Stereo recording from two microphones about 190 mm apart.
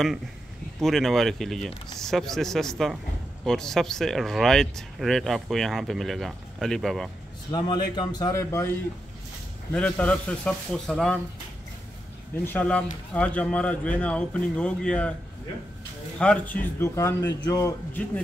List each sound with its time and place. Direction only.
0.7 s speech: centre (ahead or behind)
7.5 s a man's voice: 20° left (ahead or behind); by 11.1 s 5° left (ahead or behind)
12.4 s a man's voice: 10° left (ahead or behind)
16.2 s a man's voice: 5° left (ahead or behind)